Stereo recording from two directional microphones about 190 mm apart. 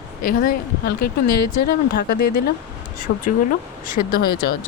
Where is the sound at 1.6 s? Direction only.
55° left (ahead or behind).